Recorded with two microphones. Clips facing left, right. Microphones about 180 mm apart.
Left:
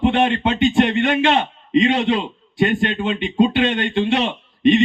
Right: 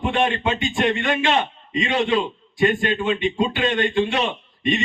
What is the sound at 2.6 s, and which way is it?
Speech, 65° left (ahead or behind).